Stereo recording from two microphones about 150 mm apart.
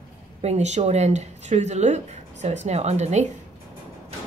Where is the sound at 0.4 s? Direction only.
45° right (ahead or behind).